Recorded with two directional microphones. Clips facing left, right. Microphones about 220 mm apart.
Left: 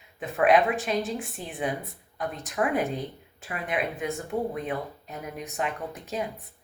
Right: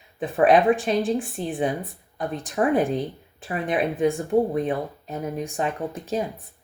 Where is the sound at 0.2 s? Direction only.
30° right (ahead or behind).